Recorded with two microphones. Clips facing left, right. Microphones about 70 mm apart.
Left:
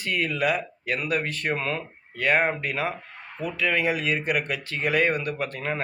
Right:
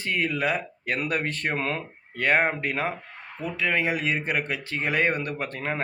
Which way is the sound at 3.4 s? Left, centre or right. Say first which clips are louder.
Left 1 dB; right.